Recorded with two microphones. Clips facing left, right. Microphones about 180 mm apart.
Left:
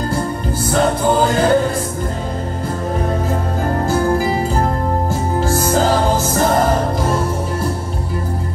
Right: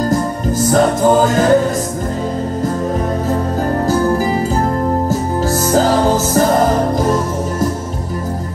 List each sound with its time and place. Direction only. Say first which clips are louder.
0.1 s music: right 4 dB; 40° right (ahead or behind)
3.8 s music: right 1 dB; 40° right (ahead or behind)
5.4 s music: right 2 dB; 40° right (ahead or behind)